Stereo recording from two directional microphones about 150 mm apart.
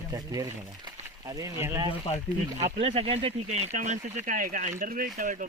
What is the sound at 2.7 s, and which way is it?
Speech, 40° right (ahead or behind).